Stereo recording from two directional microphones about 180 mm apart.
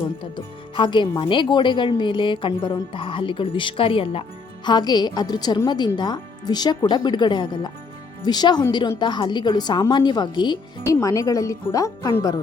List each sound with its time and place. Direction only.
0.8 s a woman's voice: 25° left (ahead or behind)